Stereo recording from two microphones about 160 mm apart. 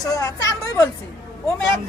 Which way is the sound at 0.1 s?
20° left (ahead or behind).